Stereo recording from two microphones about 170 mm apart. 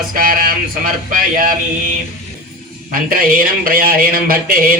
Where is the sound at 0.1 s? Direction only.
55° right (ahead or behind).